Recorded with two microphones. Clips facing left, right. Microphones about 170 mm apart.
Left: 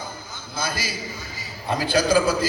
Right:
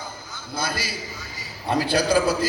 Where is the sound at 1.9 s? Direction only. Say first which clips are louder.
Left 2 dB; 65° right (ahead or behind).